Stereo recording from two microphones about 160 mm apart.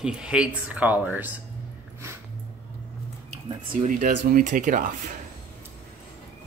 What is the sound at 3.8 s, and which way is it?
Speech, 50° right (ahead or behind).